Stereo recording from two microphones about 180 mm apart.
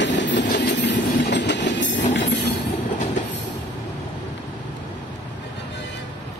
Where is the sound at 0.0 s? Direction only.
80° left.